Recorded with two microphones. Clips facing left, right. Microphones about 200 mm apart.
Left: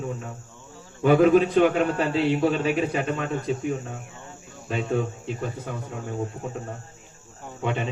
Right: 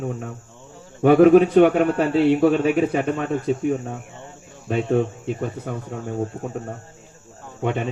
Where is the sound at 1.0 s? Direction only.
55° right (ahead or behind).